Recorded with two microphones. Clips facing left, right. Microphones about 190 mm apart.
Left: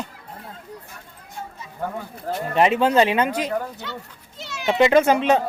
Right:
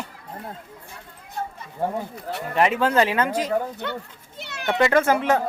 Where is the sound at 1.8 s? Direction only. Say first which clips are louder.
Right 3 dB; 30° right (ahead or behind).